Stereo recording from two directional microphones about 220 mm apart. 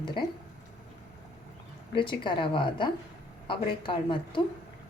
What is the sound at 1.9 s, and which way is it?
A woman's voice, 20° left (ahead or behind).